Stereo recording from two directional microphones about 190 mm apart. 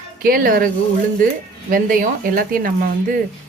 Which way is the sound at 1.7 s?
50° right (ahead or behind).